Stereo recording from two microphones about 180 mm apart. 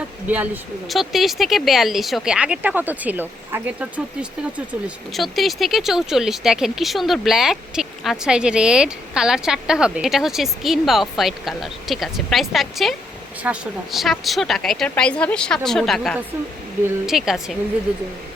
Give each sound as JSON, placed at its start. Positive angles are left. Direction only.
{"t": 0.3, "sound": "speech", "side_deg": -10}